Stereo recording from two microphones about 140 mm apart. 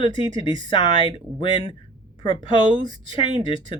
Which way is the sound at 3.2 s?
35° left (ahead or behind).